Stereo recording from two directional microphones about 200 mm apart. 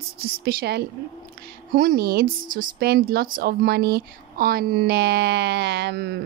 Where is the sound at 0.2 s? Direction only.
50° right (ahead or behind).